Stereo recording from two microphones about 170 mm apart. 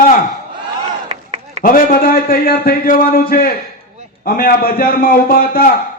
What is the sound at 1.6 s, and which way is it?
A man's voice, 55° left (ahead or behind).